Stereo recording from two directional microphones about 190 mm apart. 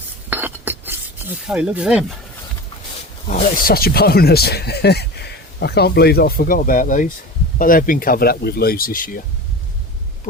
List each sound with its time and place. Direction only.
0.3 s cutlery: 10° right (ahead or behind)
3.2 s speech: 40° left (ahead or behind)